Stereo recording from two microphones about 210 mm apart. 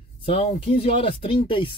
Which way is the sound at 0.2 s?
25° left (ahead or behind).